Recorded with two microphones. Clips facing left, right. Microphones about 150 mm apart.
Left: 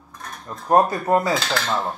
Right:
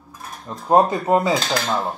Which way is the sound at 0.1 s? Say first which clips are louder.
Right 1 dB; 5° right (ahead or behind).